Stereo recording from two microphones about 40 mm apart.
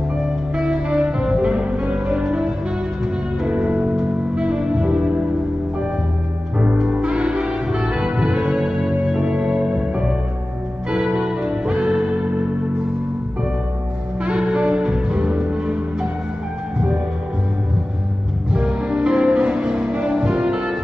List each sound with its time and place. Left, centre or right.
0.2 s music: centre
3.9 s music: centre
6.9 s music: right
14.2 s music: right
18.5 s music: right